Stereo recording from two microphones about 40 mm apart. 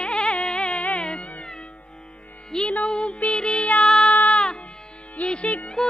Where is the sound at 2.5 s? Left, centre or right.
Centre.